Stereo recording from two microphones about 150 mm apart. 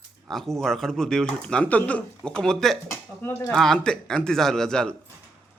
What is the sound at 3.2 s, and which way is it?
Speech, 15° left (ahead or behind).